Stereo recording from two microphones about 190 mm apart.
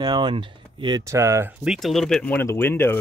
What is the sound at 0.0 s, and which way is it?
Speech, 25° right (ahead or behind).